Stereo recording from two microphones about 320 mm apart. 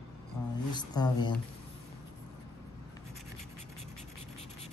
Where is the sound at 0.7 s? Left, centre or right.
Centre.